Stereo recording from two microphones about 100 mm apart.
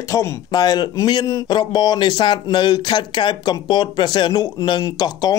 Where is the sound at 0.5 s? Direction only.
45° left (ahead or behind).